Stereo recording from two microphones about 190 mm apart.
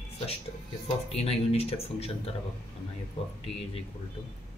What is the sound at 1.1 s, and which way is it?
Speech, 30° left (ahead or behind).